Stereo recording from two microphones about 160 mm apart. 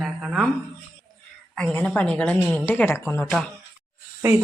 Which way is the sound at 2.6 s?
15° left (ahead or behind).